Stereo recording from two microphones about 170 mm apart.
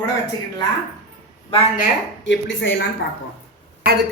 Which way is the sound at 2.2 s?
90° left.